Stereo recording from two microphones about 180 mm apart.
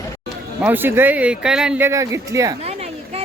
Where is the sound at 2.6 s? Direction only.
35° right (ahead or behind).